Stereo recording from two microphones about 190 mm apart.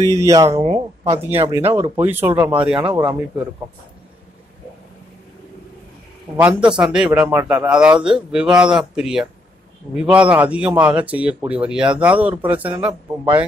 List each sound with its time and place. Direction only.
0.0 s a man's voice: 15° right (ahead or behind)
0.6 s speech: 35° right (ahead or behind)
1.1 s a man's voice: 10° right (ahead or behind)
6.3 s a man's voice: 10° right (ahead or behind)